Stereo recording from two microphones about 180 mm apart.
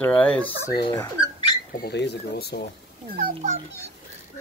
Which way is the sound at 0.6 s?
20° left (ahead or behind).